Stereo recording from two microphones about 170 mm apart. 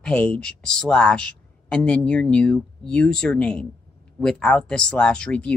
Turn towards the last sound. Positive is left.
turn(degrees=5)  # may be behind; listen again after turning